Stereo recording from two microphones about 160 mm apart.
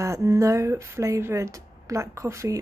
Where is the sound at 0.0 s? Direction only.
20° right (ahead or behind).